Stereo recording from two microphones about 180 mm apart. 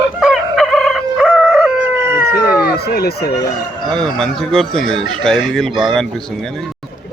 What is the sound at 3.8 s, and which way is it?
Speech, 5° left (ahead or behind).